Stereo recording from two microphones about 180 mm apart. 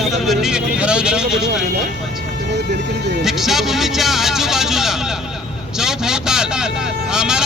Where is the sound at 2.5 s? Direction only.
70° right (ahead or behind).